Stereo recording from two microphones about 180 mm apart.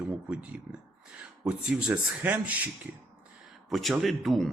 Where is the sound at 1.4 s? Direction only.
5° right (ahead or behind).